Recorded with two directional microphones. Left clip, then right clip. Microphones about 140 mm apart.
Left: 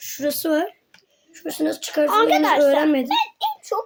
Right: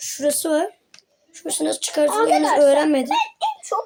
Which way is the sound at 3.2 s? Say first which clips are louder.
Right 1 dB; 60° left (ahead or behind).